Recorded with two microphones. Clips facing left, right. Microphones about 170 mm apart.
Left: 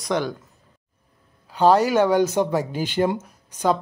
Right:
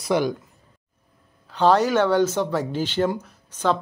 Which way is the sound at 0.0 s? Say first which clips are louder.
Right 2 dB; 10° right (ahead or behind).